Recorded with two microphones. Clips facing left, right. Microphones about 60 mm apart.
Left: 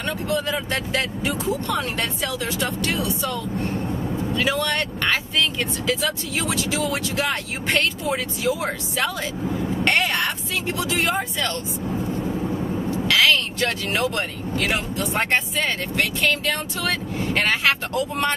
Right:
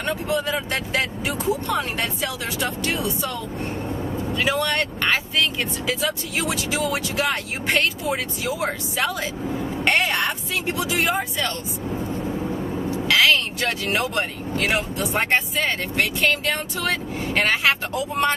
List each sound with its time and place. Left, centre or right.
0.0 s speech: centre
9.5 s vehicle: centre
9.9 s speech: centre
10.7 s speech: centre
12.4 s vehicle: centre
14.6 s speech: centre
16.0 s speech: centre